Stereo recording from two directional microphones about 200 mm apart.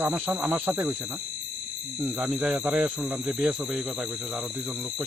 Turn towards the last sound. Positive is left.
turn(degrees=-5)  # may be behind; listen again after turning